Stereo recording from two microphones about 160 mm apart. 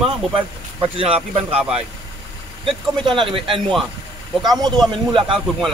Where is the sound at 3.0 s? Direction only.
30° right (ahead or behind).